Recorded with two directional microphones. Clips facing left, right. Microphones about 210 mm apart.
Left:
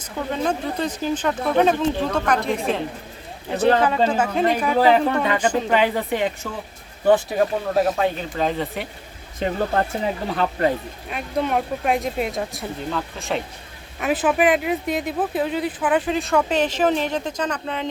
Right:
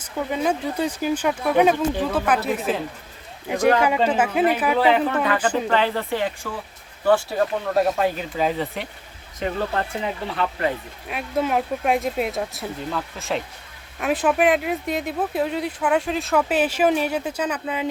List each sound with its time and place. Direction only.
0.3 s speech: 10° right (ahead or behind)
4.8 s speech: 40° left (ahead or behind)
5.6 s speech: 15° left (ahead or behind)
7.7 s speech: centre (ahead or behind)
9.4 s speech: 40° left (ahead or behind)
11.1 s speech: 5° right (ahead or behind)